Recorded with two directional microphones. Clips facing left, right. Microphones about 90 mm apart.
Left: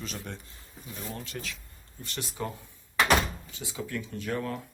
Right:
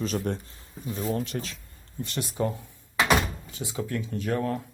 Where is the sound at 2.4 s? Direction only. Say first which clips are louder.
Right 7 dB; 35° right (ahead or behind).